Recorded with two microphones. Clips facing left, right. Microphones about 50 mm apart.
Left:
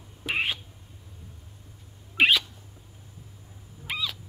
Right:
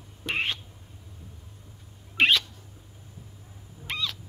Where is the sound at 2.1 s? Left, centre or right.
Centre.